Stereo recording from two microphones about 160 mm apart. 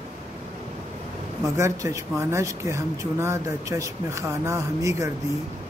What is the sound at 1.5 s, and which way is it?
Speech, 20° right (ahead or behind).